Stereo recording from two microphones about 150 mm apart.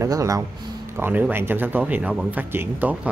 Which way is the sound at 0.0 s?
20° right (ahead or behind).